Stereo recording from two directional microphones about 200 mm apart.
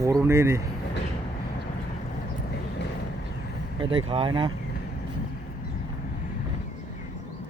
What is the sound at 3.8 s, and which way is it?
Speech, 25° right (ahead or behind).